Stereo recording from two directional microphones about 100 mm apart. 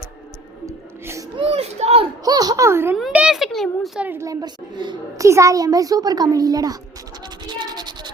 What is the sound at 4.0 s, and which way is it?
Speech, 20° right (ahead or behind).